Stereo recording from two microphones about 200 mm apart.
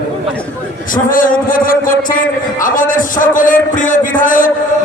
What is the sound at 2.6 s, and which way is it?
A man's voice, 40° left (ahead or behind).